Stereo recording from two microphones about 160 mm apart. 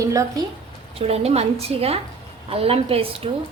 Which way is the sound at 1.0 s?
40° right (ahead or behind).